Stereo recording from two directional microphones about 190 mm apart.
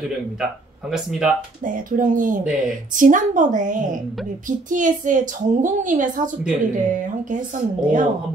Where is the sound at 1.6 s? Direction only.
45° right (ahead or behind).